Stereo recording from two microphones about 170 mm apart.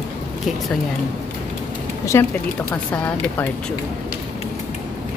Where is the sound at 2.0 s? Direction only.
15° left (ahead or behind).